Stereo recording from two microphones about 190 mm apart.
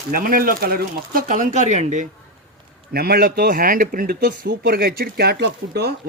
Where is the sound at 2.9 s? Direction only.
55° right (ahead or behind).